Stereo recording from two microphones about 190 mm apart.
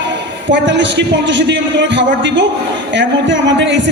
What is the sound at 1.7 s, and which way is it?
Speech, 70° right (ahead or behind).